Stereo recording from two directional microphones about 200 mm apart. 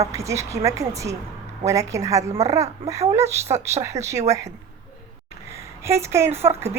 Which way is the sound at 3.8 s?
15° right (ahead or behind).